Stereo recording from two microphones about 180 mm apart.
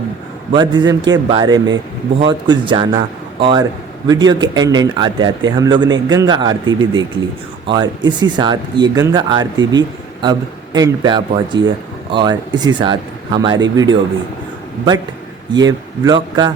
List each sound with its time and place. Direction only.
0.5 s speech: 25° right (ahead or behind)
15.5 s speech: 20° right (ahead or behind)